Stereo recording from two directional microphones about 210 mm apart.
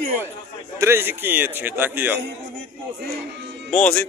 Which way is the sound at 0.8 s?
10° right (ahead or behind).